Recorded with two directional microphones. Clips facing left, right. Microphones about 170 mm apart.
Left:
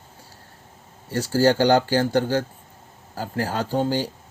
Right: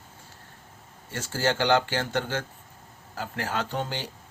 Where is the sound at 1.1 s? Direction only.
35° left (ahead or behind).